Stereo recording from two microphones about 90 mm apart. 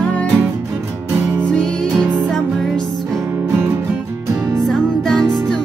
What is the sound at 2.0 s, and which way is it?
Music, 20° right (ahead or behind).